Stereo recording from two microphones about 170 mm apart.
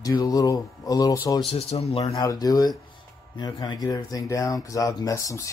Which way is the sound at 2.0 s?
20° left (ahead or behind).